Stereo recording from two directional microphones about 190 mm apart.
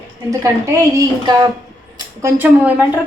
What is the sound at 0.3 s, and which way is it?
A woman's voice, 15° right (ahead or behind).